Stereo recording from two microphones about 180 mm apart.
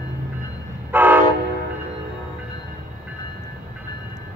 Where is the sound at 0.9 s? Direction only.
10° right (ahead or behind).